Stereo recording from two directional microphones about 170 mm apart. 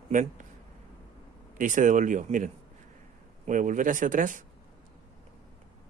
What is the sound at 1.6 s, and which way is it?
Speech, 50° right (ahead or behind).